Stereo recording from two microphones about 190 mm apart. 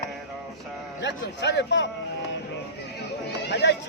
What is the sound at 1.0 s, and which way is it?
Speech, 65° left (ahead or behind).